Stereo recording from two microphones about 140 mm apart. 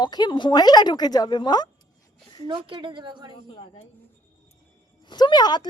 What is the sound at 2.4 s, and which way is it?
Speech, 35° right (ahead or behind).